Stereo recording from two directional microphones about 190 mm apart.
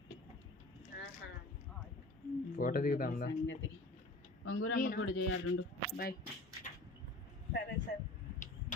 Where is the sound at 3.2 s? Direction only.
80° left.